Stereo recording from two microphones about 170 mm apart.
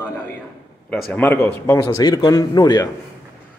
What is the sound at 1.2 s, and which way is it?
A man's voice, 15° left (ahead or behind).